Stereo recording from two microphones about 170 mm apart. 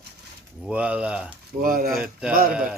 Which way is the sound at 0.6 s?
10° right (ahead or behind).